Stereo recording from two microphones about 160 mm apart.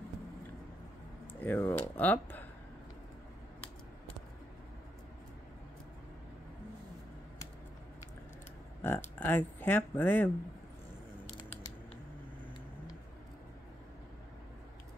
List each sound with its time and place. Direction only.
1.4 s speech: 10° left (ahead or behind)
8.8 s speech: 15° left (ahead or behind)